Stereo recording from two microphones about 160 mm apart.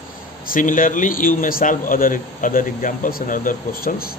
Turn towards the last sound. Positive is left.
turn(degrees=60)  # may be behind; listen again after turning